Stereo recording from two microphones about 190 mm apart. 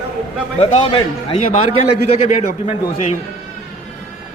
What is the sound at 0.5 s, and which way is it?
A man's voice, 30° left (ahead or behind).